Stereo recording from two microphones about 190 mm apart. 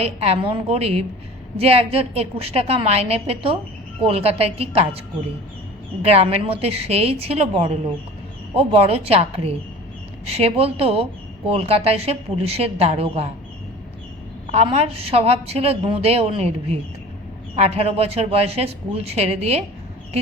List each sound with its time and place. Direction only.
0.0 s a woman's voice: 30° right (ahead or behind)
6.0 s a woman's voice: 30° right (ahead or behind)
14.5 s a woman's voice: 30° right (ahead or behind)